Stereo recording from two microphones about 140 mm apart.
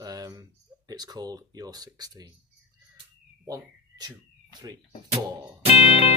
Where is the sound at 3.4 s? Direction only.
25° right (ahead or behind).